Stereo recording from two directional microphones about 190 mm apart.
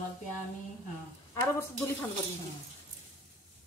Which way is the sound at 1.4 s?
10° left (ahead or behind).